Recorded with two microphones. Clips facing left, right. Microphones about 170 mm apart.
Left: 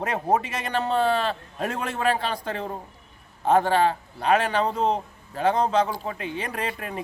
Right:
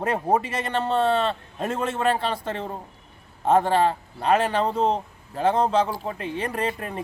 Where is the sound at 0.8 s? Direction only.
Centre (ahead or behind).